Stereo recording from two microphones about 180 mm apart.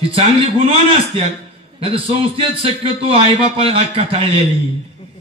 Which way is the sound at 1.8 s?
30° right (ahead or behind).